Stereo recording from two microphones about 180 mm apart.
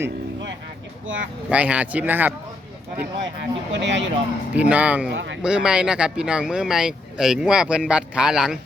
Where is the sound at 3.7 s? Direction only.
85° right.